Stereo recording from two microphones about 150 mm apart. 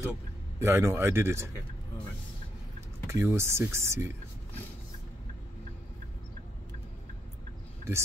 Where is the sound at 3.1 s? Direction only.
20° right (ahead or behind).